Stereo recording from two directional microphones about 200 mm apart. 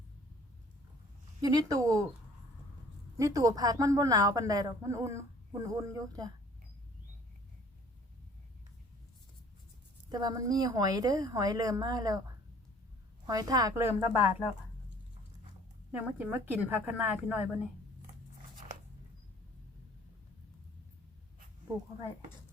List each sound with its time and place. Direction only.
1.4 s a woman's voice: 20° right (ahead or behind)
3.2 s a woman's voice: 15° right (ahead or behind)
10.1 s a woman's voice: 20° right (ahead or behind)
13.2 s a woman's voice: 20° right (ahead or behind)
15.9 s a woman's voice: 10° right (ahead or behind)